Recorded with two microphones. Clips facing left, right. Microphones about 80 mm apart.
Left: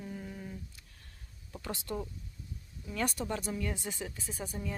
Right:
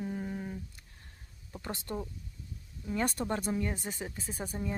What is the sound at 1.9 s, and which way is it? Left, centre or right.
Speech, right.